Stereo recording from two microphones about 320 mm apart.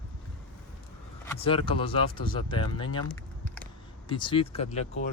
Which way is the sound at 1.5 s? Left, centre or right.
Centre.